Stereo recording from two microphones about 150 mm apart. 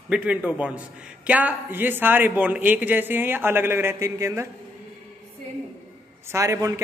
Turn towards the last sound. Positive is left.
turn(degrees=-20)  # may be behind; listen again after turning